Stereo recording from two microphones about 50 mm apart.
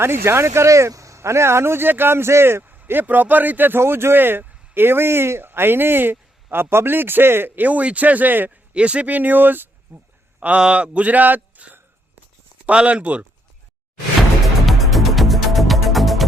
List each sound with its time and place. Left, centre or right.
0.0 s speech: right
2.6 s speech: right
3.8 s speech: right
8.7 s speech: right
10.6 s speech: right
14.2 s music: centre